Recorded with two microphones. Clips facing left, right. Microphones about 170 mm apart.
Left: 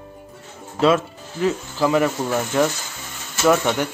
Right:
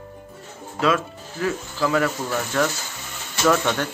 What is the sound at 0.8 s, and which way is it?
Speech, 25° left (ahead or behind).